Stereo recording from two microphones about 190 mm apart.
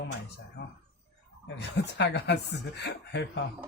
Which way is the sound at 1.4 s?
60° left (ahead or behind).